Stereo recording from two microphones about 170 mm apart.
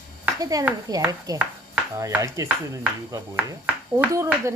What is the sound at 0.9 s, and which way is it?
A woman's voice, 20° right (ahead or behind).